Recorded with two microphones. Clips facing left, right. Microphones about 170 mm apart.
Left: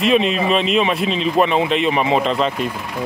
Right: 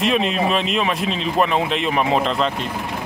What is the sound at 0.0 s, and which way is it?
Speech, centre (ahead or behind).